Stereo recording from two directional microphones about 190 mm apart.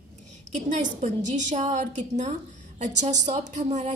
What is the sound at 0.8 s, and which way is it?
A woman's voice, 40° right (ahead or behind).